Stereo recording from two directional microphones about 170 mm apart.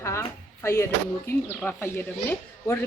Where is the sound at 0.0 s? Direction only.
15° left (ahead or behind).